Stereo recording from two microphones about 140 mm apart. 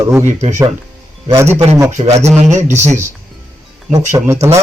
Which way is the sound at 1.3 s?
20° right (ahead or behind).